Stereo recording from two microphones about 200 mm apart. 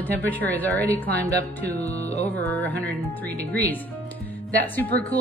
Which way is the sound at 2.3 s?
10° left (ahead or behind).